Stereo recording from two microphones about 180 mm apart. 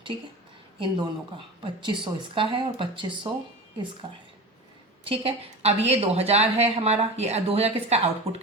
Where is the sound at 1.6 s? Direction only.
30° right (ahead or behind).